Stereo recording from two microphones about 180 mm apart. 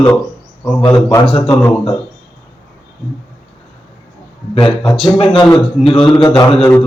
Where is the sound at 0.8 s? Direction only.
20° left (ahead or behind).